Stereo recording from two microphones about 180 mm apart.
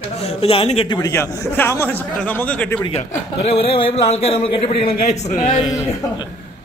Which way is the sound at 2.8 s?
35° left (ahead or behind).